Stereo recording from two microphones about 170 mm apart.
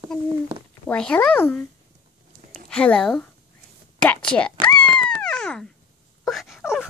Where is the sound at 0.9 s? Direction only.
5° left (ahead or behind).